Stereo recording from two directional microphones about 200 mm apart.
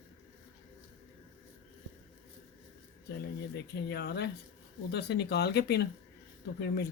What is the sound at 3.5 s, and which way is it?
Speech, 55° left (ahead or behind).